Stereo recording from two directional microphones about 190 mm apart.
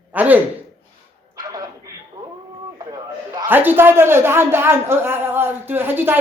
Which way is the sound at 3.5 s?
10° right (ahead or behind).